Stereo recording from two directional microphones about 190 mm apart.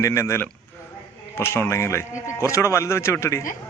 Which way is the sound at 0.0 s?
15° left (ahead or behind).